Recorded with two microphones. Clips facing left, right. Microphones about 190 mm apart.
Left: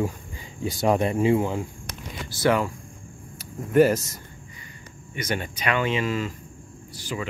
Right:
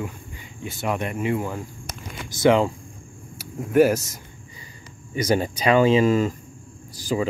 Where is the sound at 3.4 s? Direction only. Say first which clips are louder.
Right 1 dB; 5° right (ahead or behind).